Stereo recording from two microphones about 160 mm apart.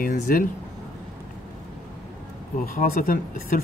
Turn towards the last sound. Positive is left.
turn(degrees=60)  # may be behind; listen again after turning